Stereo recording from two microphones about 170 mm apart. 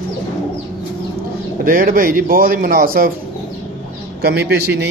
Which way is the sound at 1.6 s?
55° right (ahead or behind).